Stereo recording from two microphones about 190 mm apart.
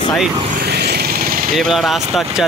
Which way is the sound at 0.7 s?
60° right (ahead or behind).